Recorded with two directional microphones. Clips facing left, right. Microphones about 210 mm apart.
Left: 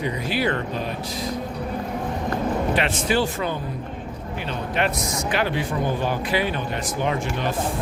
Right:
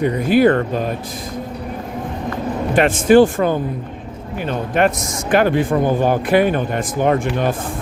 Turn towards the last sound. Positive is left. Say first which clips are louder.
# right 8 dB
turn(degrees=-50)  # may be behind; listen again after turning